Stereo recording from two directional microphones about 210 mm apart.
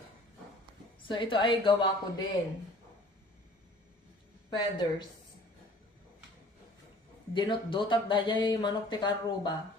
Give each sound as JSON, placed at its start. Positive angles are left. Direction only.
{"t": 1.0, "sound": "speech", "side_deg": 25}
{"t": 4.4, "sound": "speech", "side_deg": 20}
{"t": 7.3, "sound": "speech", "side_deg": 20}